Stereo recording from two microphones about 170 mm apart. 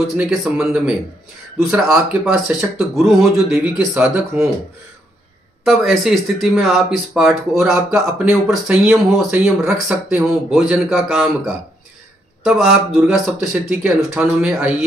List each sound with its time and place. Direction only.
0.0 s speech: centre (ahead or behind)
5.6 s speech: centre (ahead or behind)